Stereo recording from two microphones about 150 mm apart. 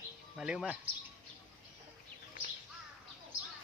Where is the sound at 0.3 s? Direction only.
5° right (ahead or behind).